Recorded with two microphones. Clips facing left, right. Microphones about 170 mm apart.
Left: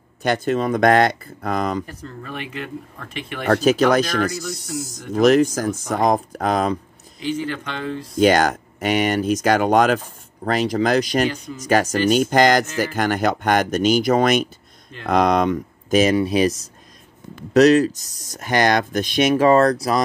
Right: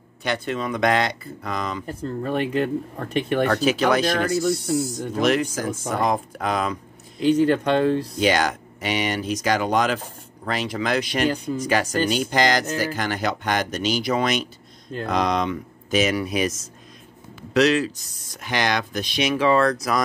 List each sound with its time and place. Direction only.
0.2 s speech: 45° left (ahead or behind)
2.0 s speech: 40° right (ahead or behind)
3.4 s speech: 45° left (ahead or behind)
7.3 s speech: 40° right (ahead or behind)
8.2 s speech: 45° left (ahead or behind)
17.6 s speech: 45° left (ahead or behind)